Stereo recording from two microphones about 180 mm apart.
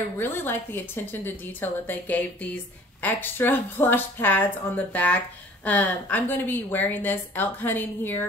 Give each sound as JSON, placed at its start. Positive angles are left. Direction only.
{"t": 0.2, "sound": "a woman's voice", "side_deg": 10}